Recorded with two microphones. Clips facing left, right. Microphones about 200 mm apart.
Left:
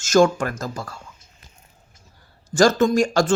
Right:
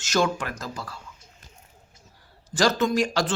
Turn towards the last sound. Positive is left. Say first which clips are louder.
# left 5 dB
turn(degrees=45)  # may be behind; listen again after turning